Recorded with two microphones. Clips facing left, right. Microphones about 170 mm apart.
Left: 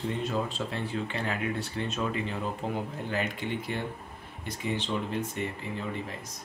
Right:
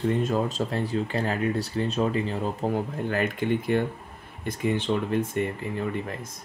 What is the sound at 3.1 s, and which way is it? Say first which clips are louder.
Speech: right 7 dB; 50° right (ahead or behind).